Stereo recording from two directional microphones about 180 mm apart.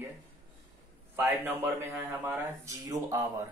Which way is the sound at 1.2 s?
10° right (ahead or behind).